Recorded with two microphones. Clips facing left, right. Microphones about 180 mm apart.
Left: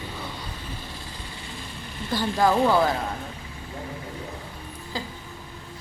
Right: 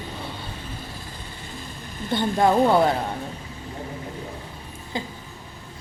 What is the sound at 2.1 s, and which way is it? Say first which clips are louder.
Speech: right 2 dB; 25° right (ahead or behind).